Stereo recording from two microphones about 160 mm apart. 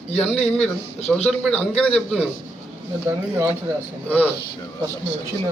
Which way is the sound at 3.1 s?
15° right (ahead or behind).